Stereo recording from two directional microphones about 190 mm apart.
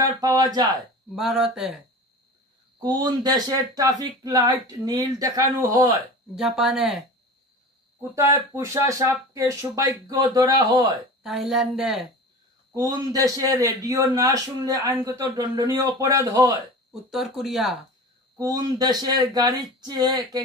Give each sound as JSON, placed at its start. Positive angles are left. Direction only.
{"t": 0.0, "sound": "speech", "side_deg": -20}
{"t": 1.1, "sound": "a woman's voice", "side_deg": 0}
{"t": 2.8, "sound": "speech", "side_deg": -20}
{"t": 6.3, "sound": "a woman's voice", "side_deg": -5}
{"t": 8.1, "sound": "speech", "side_deg": -15}
{"t": 11.2, "sound": "a woman's voice", "side_deg": 0}
{"t": 12.7, "sound": "speech", "side_deg": -20}
{"t": 16.9, "sound": "a woman's voice", "side_deg": 0}
{"t": 18.4, "sound": "speech", "side_deg": -20}